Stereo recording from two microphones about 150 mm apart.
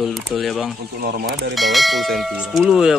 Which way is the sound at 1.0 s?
90° right.